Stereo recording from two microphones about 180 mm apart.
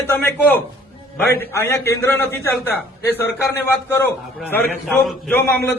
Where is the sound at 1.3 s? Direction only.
15° left (ahead or behind).